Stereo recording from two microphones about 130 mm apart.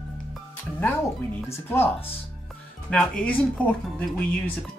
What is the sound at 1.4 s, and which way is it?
Speech, 20° left (ahead or behind).